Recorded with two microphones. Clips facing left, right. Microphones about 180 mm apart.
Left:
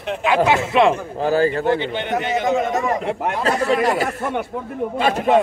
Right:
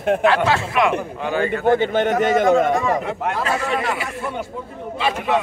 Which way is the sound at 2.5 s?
20° left (ahead or behind).